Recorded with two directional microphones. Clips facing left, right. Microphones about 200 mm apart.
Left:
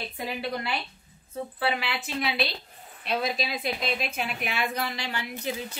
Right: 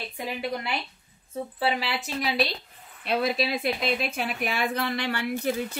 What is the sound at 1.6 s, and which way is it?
Speech, 35° right (ahead or behind).